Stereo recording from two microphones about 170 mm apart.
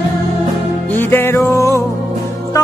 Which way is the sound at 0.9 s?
10° left (ahead or behind).